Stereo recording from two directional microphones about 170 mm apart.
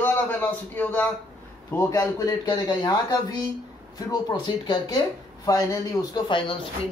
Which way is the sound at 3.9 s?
25° left (ahead or behind).